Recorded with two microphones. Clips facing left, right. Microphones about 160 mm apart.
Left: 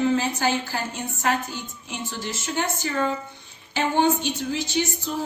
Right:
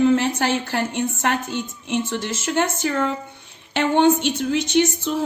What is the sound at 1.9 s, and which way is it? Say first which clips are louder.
A woman's voice: right 8 dB; 85° right.